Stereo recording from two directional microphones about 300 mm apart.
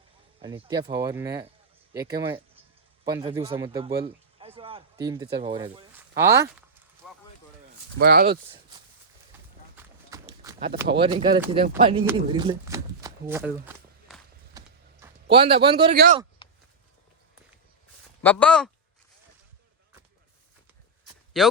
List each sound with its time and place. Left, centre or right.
0.4 s a man's voice: centre
7.9 s speech: right
9.7 s walk: centre
10.8 s speech: centre
11.5 s shuffling cards: centre
15.0 s a man's voice: centre
18.2 s speech: centre
21.3 s speech: centre